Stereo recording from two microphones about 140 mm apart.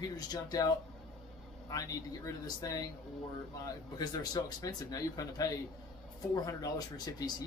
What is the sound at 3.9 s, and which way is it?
Speech, 30° left (ahead or behind).